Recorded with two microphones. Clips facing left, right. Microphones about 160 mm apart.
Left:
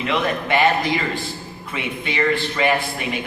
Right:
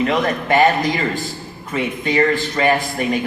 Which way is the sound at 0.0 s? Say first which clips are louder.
Right 4 dB; 40° right (ahead or behind).